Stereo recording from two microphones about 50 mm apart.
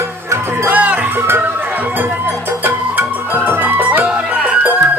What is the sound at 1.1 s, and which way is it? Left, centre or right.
Music, right.